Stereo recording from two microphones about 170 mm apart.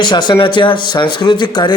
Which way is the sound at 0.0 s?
25° left (ahead or behind).